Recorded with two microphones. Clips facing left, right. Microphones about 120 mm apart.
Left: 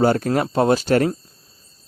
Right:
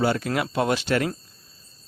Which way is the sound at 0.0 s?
40° left (ahead or behind).